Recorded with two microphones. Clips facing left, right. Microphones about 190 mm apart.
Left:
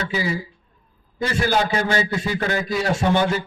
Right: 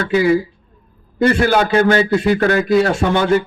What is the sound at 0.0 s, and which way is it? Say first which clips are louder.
A man's voice: right 11 dB; 60° right (ahead or behind).